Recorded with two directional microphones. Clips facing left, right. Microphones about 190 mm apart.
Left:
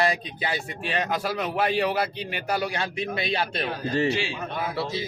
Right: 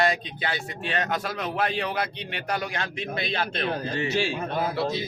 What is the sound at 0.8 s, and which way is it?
Speech, 5° left (ahead or behind).